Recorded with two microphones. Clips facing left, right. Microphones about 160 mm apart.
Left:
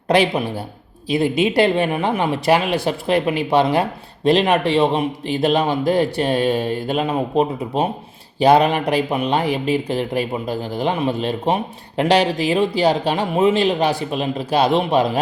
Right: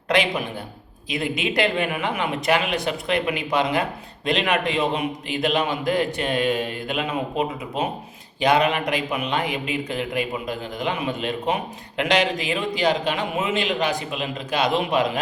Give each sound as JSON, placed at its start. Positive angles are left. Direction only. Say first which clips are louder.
{"t": 0.1, "sound": "speech", "louder": "left 5 dB", "side_deg": 35}